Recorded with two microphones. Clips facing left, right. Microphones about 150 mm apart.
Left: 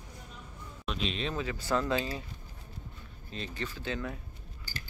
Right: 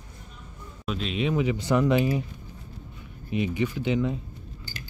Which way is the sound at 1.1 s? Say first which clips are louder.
Right 13 dB; 10° right (ahead or behind).